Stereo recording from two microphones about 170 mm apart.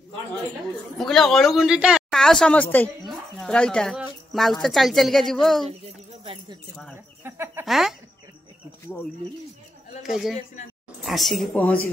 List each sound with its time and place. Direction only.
0.9 s speech: centre (ahead or behind)
5.7 s speech: 35° right (ahead or behind)
7.2 s speech: 15° right (ahead or behind)
7.6 s speech: centre (ahead or behind)
10.0 s speech: centre (ahead or behind)